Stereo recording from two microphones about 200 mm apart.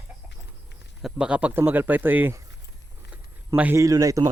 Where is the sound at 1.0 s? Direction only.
5° right (ahead or behind).